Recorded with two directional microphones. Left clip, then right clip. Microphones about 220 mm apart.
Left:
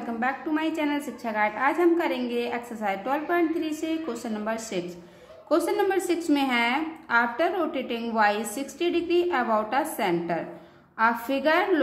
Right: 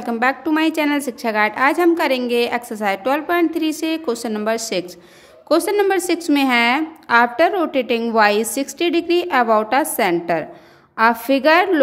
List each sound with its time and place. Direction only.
0.0 s a woman's voice: 50° right (ahead or behind)